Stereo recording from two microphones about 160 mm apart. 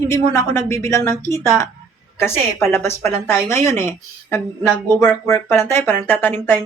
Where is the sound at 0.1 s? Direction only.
15° left (ahead or behind).